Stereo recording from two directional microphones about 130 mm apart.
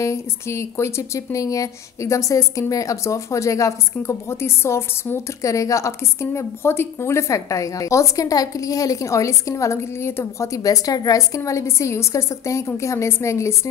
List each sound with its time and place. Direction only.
0.0 s speech: 25° left (ahead or behind)